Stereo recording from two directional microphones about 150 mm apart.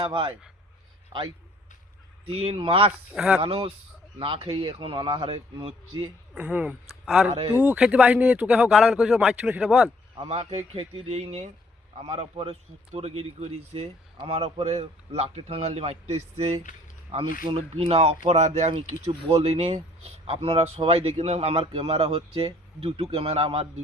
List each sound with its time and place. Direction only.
0.0 s a man's voice: 35° right (ahead or behind)
2.2 s a man's voice: 40° right (ahead or behind)
3.1 s speech: 10° right (ahead or behind)
3.4 s a man's voice: 35° right (ahead or behind)
6.3 s speech: 10° right (ahead or behind)
10.2 s a man's voice: 45° right (ahead or behind)